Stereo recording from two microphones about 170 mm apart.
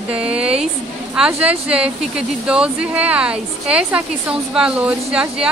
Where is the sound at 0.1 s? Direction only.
5° right (ahead or behind).